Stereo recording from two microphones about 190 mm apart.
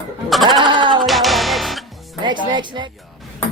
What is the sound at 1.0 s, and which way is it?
Music, centre (ahead or behind).